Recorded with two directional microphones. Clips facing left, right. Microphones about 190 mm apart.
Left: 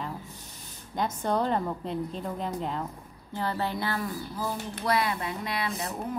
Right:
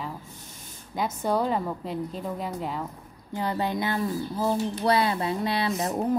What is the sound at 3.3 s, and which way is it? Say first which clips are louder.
Speech: right 3 dB; 15° right (ahead or behind).